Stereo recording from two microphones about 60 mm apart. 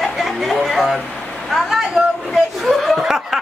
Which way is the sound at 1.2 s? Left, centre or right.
Left.